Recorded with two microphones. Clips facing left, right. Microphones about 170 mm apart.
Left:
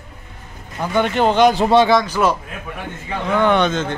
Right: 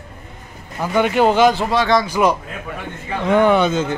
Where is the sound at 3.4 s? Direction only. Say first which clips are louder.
Right 1 dB; 5° right (ahead or behind).